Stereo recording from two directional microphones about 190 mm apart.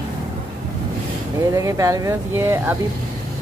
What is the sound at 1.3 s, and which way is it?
Speech, 15° right (ahead or behind).